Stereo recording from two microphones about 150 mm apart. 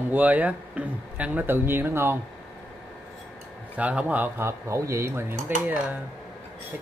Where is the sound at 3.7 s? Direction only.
10° right (ahead or behind).